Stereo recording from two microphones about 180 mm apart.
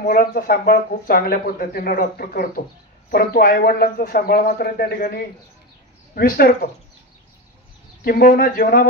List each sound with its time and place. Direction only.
0.0 s speech: 50° left (ahead or behind)
8.0 s speech: 50° left (ahead or behind)